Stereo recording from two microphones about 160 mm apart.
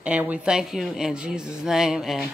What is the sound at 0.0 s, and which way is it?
Speech, 10° right (ahead or behind).